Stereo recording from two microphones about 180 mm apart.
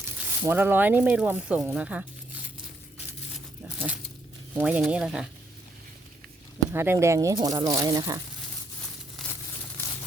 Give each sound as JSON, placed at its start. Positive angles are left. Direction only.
{"t": 0.4, "sound": "speech", "side_deg": -10}
{"t": 3.3, "sound": "a sound", "side_deg": -10}
{"t": 4.5, "sound": "speech", "side_deg": -10}
{"t": 6.7, "sound": "speech", "side_deg": -15}